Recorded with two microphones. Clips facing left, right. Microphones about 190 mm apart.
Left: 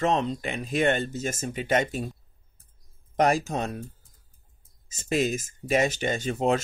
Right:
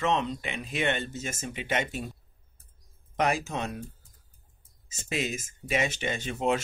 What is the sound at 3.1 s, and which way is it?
Speech, 40° left (ahead or behind).